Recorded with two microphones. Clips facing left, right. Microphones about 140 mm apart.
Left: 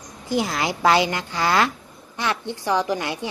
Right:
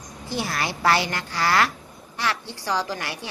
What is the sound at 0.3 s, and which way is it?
A woman's voice, 15° left (ahead or behind).